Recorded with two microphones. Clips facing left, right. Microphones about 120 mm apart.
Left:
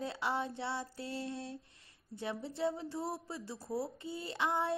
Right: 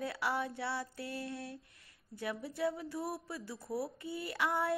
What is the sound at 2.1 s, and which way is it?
Speech, 25° left (ahead or behind).